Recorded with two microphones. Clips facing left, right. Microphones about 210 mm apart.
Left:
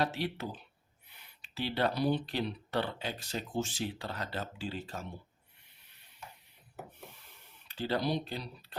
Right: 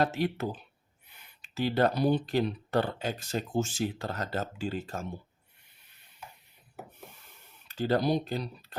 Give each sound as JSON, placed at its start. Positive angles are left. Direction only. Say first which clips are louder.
{"t": 0.0, "sound": "speech", "louder": "right 5 dB", "side_deg": -50}
{"t": 7.7, "sound": "speech", "louder": "right 5 dB", "side_deg": -45}